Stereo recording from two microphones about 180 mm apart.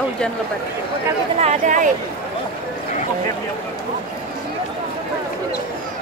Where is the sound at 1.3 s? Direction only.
40° right (ahead or behind).